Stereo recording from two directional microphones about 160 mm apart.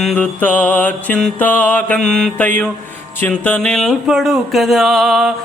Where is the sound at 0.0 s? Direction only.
5° left (ahead or behind).